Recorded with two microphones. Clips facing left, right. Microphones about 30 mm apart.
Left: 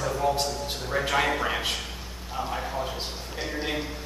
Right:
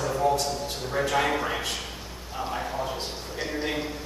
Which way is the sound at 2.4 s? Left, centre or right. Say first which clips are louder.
Even; centre.